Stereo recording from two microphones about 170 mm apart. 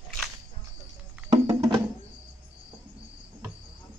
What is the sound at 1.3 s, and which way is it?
Music, 20° right (ahead or behind).